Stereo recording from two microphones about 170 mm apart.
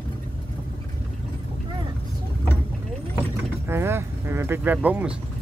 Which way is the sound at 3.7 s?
15° right (ahead or behind).